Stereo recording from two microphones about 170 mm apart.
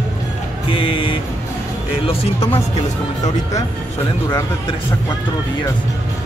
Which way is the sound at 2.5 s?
40° left (ahead or behind).